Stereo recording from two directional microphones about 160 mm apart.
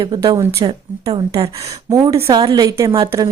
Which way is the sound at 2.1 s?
35° right (ahead or behind).